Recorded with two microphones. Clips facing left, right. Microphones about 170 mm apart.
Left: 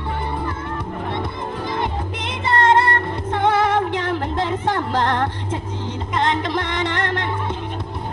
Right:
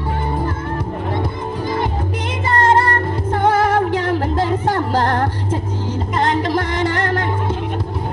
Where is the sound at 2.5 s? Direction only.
40° right (ahead or behind).